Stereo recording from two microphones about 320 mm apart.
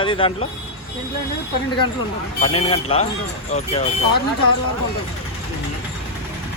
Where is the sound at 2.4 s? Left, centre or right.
Centre.